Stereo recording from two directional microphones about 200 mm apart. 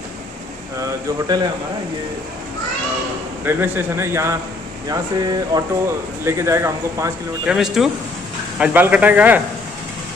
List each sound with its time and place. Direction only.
0.7 s speech: 20° right (ahead or behind)
3.4 s a man's voice: 10° right (ahead or behind)
7.4 s a man's voice: centre (ahead or behind)